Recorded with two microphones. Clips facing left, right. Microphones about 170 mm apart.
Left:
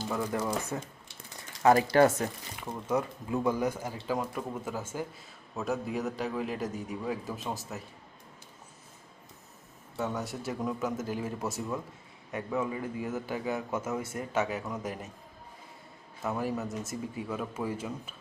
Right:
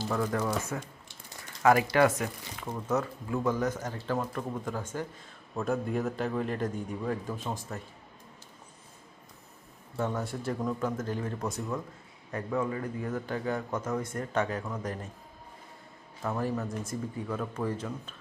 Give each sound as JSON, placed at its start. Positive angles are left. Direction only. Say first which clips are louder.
{"t": 0.1, "sound": "speech", "louder": "right 1 dB", "side_deg": 10}
{"t": 1.6, "sound": "speech", "louder": "left 1 dB", "side_deg": 35}
{"t": 2.9, "sound": "a man's voice", "louder": "even", "side_deg": 20}
{"t": 10.0, "sound": "a man's voice", "louder": "right 2 dB", "side_deg": 0}
{"t": 16.2, "sound": "speech", "louder": "right 1 dB", "side_deg": 5}